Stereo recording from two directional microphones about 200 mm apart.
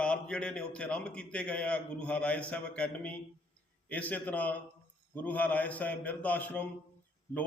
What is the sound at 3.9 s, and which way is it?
A man's voice, 5° left (ahead or behind).